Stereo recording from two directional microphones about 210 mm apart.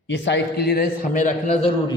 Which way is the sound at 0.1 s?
55° left (ahead or behind).